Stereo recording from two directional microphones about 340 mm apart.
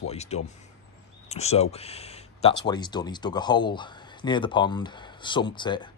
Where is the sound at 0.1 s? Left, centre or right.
Centre.